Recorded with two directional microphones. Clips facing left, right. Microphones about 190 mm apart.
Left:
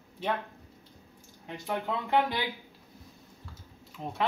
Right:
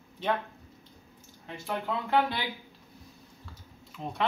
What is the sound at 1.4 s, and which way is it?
Speech, 15° left (ahead or behind).